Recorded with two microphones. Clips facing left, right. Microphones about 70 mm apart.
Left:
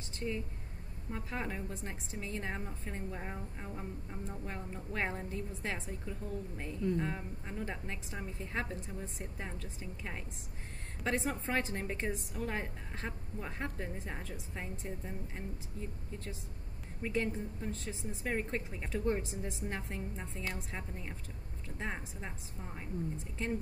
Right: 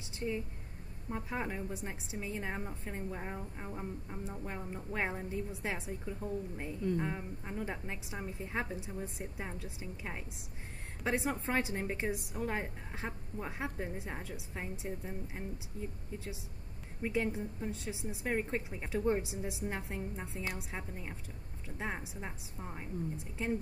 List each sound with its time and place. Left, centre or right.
0.2 s a woman's voice: right
1.1 s a woman's voice: centre
17.0 s a woman's voice: centre